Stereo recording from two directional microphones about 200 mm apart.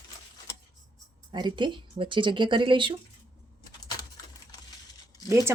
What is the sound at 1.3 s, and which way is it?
Speech, 20° right (ahead or behind).